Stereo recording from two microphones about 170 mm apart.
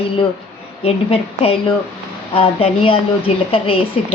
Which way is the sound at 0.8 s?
35° left (ahead or behind).